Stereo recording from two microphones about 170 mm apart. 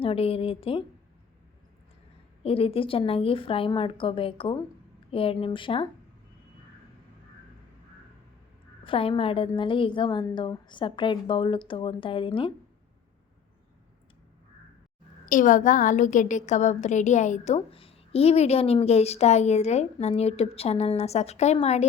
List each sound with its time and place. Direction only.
0.0 s a woman's voice: 35° left (ahead or behind)
2.4 s a woman's voice: 35° left (ahead or behind)
8.8 s a woman's voice: 30° left (ahead or behind)
15.3 s a woman's voice: 50° left (ahead or behind)